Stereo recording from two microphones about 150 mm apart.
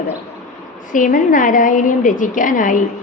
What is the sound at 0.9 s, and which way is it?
A woman's voice, 65° left (ahead or behind).